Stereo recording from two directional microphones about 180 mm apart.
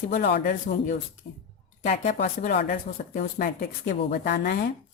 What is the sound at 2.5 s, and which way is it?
Speech, 55° left (ahead or behind).